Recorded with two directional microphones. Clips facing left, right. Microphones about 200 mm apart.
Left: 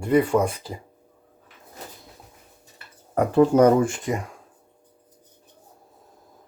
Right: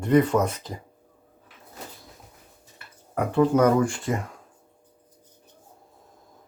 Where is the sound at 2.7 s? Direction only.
35° left (ahead or behind); by 4.2 s 20° left (ahead or behind).